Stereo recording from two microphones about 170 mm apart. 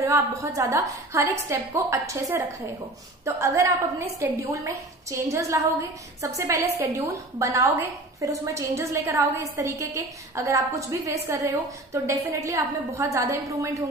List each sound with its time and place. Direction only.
0.0 s a woman's voice: 20° right (ahead or behind)